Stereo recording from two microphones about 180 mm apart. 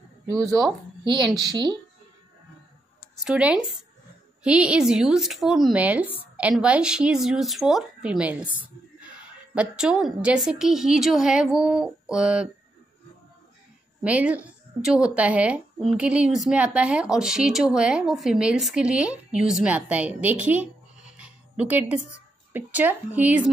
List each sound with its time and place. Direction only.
0.3 s speech: 20° right (ahead or behind)
3.3 s speech: 5° right (ahead or behind)
14.0 s a woman's voice: 5° right (ahead or behind)
21.2 s music: 10° right (ahead or behind)
22.5 s a woman's voice: 10° right (ahead or behind)